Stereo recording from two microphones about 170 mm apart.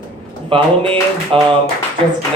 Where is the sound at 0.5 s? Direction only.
30° right (ahead or behind).